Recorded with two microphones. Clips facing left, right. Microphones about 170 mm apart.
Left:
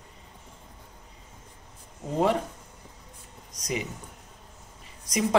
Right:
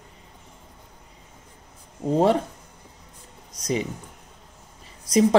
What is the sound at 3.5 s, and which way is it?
Speech, 30° right (ahead or behind).